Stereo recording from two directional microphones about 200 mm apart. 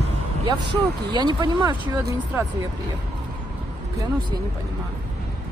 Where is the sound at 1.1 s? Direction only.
20° right (ahead or behind).